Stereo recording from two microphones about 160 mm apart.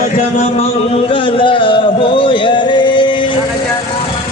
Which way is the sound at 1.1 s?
30° left (ahead or behind).